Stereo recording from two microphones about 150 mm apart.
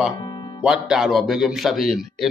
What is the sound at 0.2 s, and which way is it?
Music, 30° left (ahead or behind).